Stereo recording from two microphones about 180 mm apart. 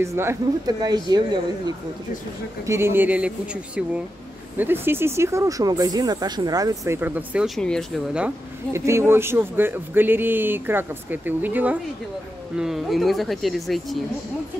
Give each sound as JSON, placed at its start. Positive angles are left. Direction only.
{"t": 0.0, "sound": "speech", "side_deg": -15}
{"t": 8.7, "sound": "speech", "side_deg": -15}